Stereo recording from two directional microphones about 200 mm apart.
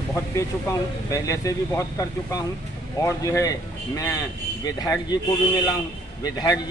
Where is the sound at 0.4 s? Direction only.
15° left (ahead or behind).